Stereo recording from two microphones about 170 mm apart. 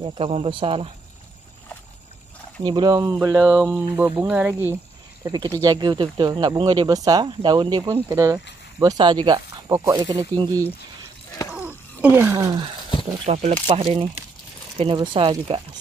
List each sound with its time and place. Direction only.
0.0 s speech: 30° right (ahead or behind)
2.6 s speech: 25° right (ahead or behind); by 4.7 s 10° right (ahead or behind)
5.2 s speech: 25° right (ahead or behind)
11.5 s a sound: 10° right (ahead or behind)
13.2 s speech: 40° right (ahead or behind)